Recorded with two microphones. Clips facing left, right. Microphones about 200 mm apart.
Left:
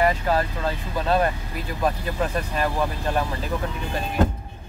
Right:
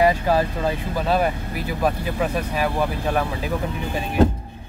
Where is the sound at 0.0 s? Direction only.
10° right (ahead or behind).